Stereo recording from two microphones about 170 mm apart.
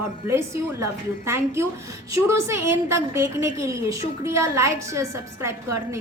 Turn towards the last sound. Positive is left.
turn(degrees=-15)  # may be behind; listen again after turning